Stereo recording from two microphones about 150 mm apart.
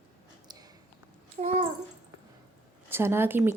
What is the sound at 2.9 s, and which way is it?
Speech, 15° right (ahead or behind).